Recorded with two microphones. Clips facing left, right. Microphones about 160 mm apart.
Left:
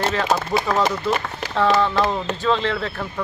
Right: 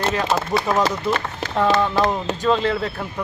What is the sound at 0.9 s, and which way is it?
Speech, 15° left (ahead or behind).